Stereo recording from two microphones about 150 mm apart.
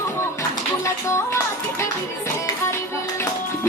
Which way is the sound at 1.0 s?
20° left (ahead or behind).